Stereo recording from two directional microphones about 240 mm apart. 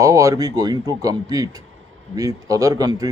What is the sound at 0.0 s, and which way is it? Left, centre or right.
A man's voice, centre.